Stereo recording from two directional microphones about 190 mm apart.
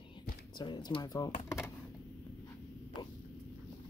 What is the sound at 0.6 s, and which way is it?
Music, 25° left (ahead or behind).